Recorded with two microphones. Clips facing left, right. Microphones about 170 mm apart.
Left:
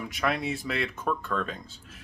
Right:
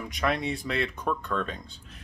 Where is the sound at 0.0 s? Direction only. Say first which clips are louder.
Right 1 dB; centre (ahead or behind).